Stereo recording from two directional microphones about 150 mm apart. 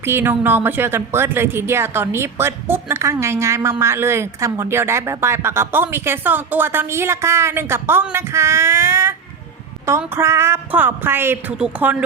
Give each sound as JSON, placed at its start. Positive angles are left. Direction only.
{"t": 0.0, "sound": "a woman's voice", "side_deg": -15}